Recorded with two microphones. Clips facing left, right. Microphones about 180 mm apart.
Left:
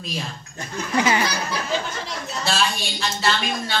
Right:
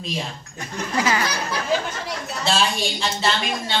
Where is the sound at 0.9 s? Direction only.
25° left (ahead or behind).